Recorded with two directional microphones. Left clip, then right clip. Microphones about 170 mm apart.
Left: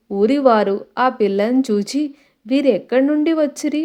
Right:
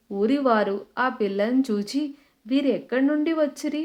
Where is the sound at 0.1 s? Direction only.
30° left (ahead or behind).